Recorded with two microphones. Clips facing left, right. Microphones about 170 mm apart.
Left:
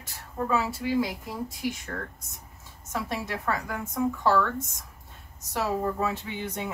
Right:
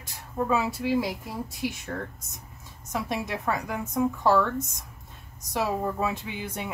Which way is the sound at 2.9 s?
15° right (ahead or behind).